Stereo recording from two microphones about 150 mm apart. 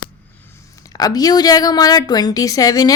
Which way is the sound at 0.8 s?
25° left (ahead or behind).